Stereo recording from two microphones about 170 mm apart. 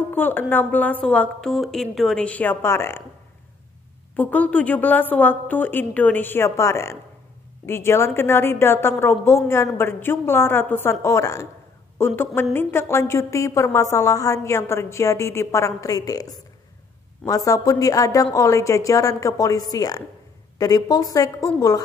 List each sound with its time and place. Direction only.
0.1 s a woman's voice: 10° left (ahead or behind)
4.1 s a woman's voice: 10° left (ahead or behind)